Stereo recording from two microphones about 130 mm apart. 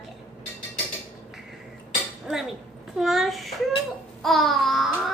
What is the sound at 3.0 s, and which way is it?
A child's voice, centre (ahead or behind).